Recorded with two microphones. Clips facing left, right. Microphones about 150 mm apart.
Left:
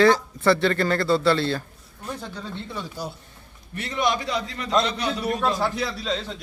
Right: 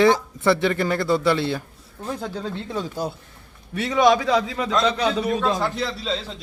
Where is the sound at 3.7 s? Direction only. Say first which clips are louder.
Right 7 dB; 90° right.